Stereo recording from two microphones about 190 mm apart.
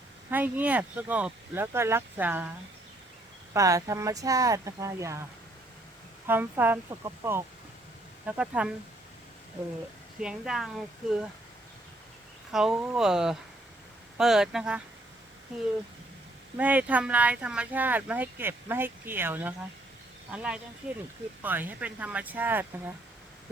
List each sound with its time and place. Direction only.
0.3 s speech: 10° right (ahead or behind)
3.5 s speech: 15° right (ahead or behind)
6.2 s speech: 10° right (ahead or behind)
10.2 s speech: 5° right (ahead or behind)
12.5 s speech: centre (ahead or behind)
16.6 s speech: 10° right (ahead or behind)